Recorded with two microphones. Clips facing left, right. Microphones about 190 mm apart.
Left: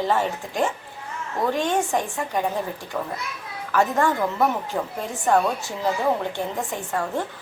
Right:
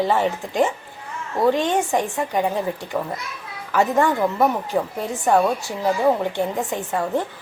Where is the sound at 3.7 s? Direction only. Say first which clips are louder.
Right 2 dB; 15° right (ahead or behind).